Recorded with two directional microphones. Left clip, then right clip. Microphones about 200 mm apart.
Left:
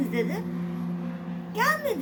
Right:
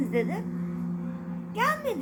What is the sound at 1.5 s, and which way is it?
Speech, 25° right (ahead or behind).